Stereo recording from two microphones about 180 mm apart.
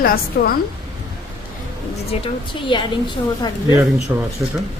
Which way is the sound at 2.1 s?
35° left (ahead or behind).